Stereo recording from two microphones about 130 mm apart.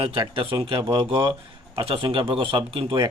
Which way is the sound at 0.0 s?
40° right (ahead or behind).